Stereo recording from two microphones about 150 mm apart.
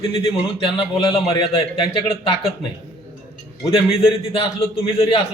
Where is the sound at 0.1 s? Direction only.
35° left (ahead or behind).